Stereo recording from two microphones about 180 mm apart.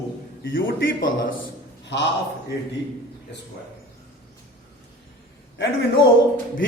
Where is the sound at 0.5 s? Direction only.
50° left (ahead or behind).